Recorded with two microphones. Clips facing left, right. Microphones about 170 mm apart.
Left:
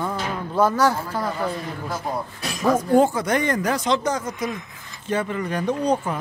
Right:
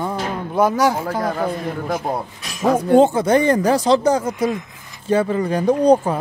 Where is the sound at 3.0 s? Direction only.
25° right (ahead or behind).